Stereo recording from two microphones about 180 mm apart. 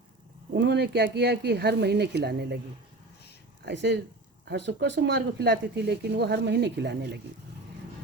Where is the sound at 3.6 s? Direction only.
75° right (ahead or behind).